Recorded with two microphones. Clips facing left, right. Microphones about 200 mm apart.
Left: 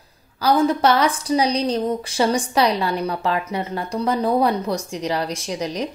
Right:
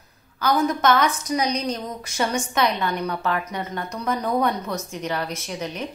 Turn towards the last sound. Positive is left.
turn(degrees=35)  # may be behind; listen again after turning